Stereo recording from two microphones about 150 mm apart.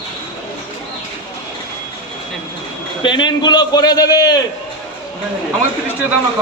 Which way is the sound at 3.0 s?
30° left (ahead or behind).